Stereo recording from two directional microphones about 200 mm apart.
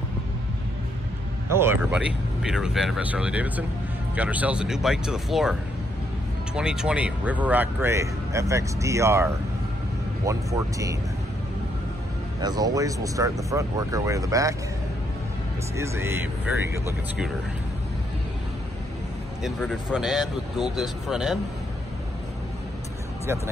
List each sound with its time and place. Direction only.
1.5 s speech: 10° right (ahead or behind)
12.4 s speech: 20° right (ahead or behind)
15.7 s speech: 15° right (ahead or behind)
19.4 s speech: 5° left (ahead or behind)
23.2 s speech: 15° right (ahead or behind)